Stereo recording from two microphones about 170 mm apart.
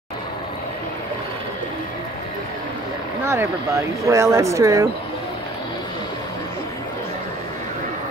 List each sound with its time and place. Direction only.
3.3 s speech: 15° right (ahead or behind)